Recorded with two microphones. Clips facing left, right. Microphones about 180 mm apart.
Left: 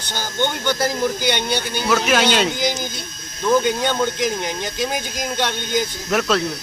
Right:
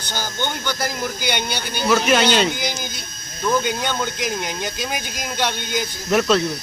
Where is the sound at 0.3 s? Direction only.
25° left (ahead or behind).